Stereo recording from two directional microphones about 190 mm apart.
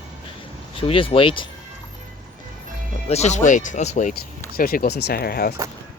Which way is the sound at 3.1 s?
35° left (ahead or behind).